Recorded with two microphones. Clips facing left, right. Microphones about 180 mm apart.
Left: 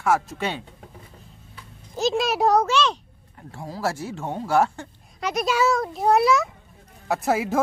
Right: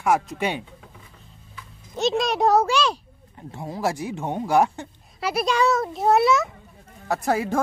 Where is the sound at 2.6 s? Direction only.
10° right (ahead or behind).